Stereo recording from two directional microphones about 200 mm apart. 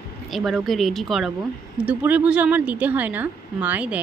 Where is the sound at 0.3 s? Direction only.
Centre (ahead or behind).